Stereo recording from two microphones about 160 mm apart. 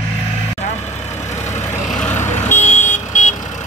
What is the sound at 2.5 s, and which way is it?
Vehicle, 50° left (ahead or behind).